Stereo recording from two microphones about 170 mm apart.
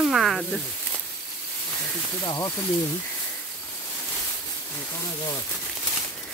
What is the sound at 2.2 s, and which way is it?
Speech, 25° left (ahead or behind).